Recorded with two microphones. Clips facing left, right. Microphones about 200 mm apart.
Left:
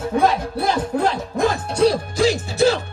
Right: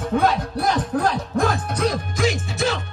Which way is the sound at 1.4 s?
30° left (ahead or behind).